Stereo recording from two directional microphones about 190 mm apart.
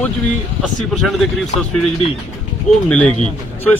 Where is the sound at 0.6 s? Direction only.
Centre (ahead or behind).